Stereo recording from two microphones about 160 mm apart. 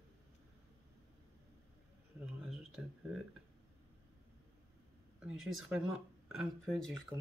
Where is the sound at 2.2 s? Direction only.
5° right (ahead or behind).